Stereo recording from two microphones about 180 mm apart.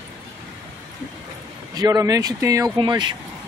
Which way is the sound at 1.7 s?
20° right (ahead or behind).